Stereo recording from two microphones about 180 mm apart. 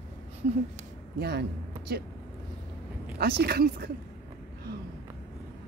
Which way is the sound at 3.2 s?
65° right (ahead or behind).